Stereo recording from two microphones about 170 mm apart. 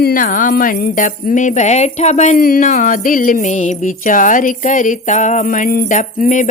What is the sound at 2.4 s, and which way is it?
Music, 60° left (ahead or behind).